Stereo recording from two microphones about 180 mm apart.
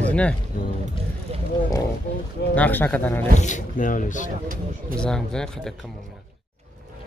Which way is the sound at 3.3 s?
45° left (ahead or behind).